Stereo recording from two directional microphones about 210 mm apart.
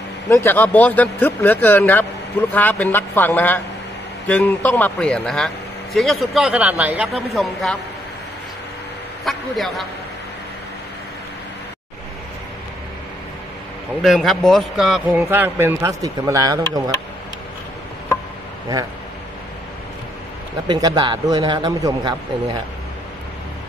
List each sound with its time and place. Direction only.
0.3 s speech: 10° left (ahead or behind)
9.2 s speech: centre (ahead or behind)
14.0 s speech: centre (ahead or behind); by 16.9 s 15° right (ahead or behind)
20.6 s a man's voice: 20° right (ahead or behind)